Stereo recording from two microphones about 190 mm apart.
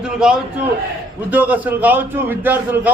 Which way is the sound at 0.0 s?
5° right (ahead or behind).